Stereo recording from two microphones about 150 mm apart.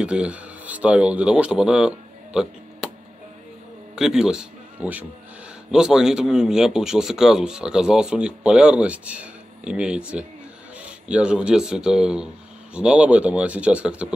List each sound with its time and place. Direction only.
0.0 s speech: 5° right (ahead or behind)
3.9 s speech: 5° right (ahead or behind)